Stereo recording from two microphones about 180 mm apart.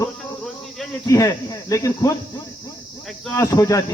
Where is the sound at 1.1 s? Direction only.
15° left (ahead or behind).